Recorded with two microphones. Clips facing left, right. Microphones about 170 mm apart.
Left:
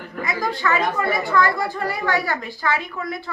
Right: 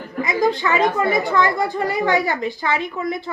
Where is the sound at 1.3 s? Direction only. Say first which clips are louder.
Right 1 dB; 20° right (ahead or behind).